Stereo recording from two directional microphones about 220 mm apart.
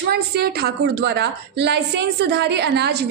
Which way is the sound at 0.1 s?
45° right (ahead or behind).